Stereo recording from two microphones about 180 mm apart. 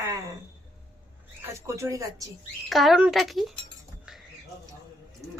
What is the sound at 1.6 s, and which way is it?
Speech, 15° right (ahead or behind).